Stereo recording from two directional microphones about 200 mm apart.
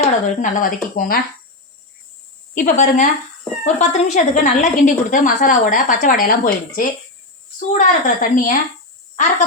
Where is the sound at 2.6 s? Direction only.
40° left (ahead or behind).